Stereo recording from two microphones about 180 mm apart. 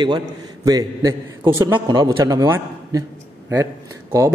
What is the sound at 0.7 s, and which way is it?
A man's voice, 20° right (ahead or behind).